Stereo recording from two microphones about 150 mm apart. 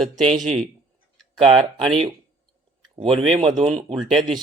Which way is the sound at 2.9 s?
35° right (ahead or behind).